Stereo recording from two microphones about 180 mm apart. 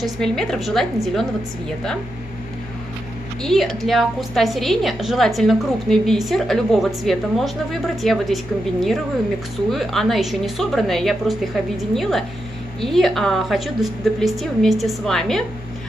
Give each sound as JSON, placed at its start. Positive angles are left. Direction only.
{"t": 0.0, "sound": "a woman's voice", "side_deg": 5}
{"t": 3.4, "sound": "a woman's voice", "side_deg": 0}